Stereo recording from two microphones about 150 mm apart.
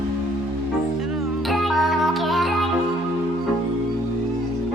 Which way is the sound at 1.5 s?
Centre (ahead or behind).